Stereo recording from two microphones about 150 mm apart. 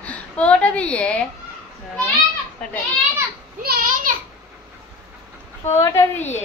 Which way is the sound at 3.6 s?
80° right.